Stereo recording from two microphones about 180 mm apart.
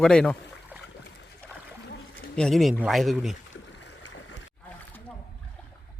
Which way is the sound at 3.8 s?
90° left.